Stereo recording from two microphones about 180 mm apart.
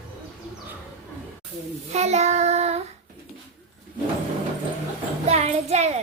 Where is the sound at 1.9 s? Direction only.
40° right (ahead or behind).